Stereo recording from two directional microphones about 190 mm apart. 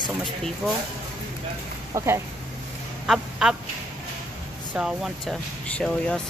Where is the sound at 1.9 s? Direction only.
15° right (ahead or behind).